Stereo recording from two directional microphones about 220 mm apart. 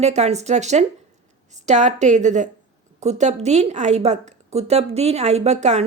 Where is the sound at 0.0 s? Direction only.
30° right (ahead or behind).